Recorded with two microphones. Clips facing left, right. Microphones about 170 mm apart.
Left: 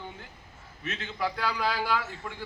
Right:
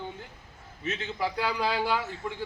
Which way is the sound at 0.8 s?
25° right (ahead or behind).